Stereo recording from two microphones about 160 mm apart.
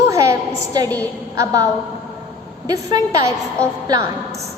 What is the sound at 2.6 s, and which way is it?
A woman's voice, 20° right (ahead or behind).